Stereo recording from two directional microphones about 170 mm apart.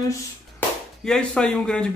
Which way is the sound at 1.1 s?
5° left (ahead or behind).